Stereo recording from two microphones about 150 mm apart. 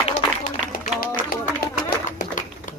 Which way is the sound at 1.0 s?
65° left (ahead or behind).